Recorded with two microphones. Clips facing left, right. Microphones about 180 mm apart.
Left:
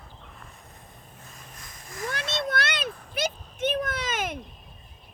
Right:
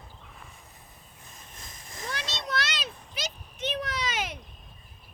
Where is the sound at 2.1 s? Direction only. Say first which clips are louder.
Left 4 dB; 55° left (ahead or behind).